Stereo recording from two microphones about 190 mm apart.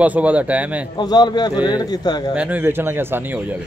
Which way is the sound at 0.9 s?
20° left (ahead or behind).